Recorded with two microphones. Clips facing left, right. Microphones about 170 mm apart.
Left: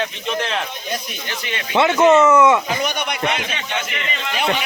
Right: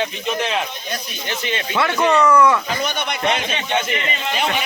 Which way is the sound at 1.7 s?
20° left (ahead or behind).